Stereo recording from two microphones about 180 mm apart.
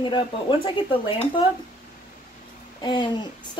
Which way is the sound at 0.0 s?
25° left (ahead or behind).